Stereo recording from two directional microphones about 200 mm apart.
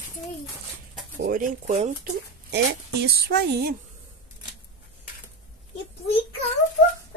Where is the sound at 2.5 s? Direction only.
55° right (ahead or behind).